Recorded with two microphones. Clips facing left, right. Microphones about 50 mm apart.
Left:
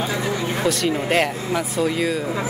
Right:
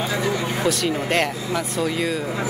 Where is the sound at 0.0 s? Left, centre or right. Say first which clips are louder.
Even; centre.